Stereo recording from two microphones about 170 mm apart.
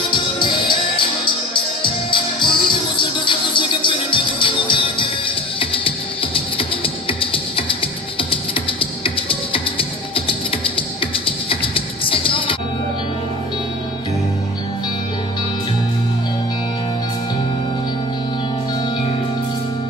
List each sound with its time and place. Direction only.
0.1 s music: 30° left (ahead or behind)